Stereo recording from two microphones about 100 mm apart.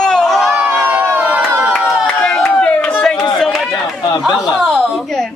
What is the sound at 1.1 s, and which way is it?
Crowd, 15° right (ahead or behind).